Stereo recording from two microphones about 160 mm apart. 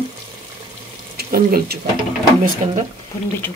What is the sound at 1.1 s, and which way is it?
Speech, 70° right (ahead or behind).